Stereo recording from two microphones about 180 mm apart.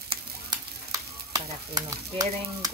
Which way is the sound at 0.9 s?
20° right (ahead or behind).